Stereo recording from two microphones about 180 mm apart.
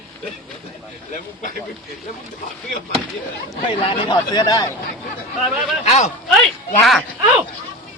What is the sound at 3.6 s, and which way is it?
Speech, 25° left (ahead or behind).